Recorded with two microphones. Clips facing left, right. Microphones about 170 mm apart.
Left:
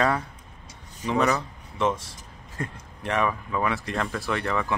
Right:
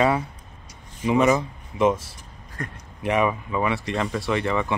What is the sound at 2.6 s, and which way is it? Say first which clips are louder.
Speech: left 1 dB; 25° left (ahead or behind).